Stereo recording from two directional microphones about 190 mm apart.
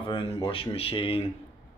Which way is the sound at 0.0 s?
25° left (ahead or behind).